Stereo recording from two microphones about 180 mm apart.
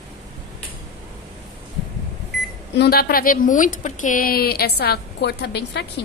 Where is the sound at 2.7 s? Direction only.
60° left (ahead or behind).